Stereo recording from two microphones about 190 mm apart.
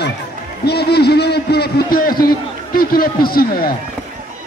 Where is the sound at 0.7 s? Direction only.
60° left (ahead or behind).